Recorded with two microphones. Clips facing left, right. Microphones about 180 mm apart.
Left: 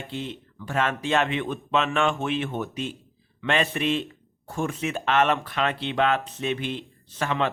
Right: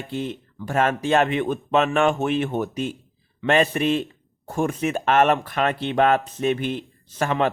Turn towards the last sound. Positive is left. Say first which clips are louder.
# right 4 dB
turn(degrees=-45)  # may be behind; listen again after turning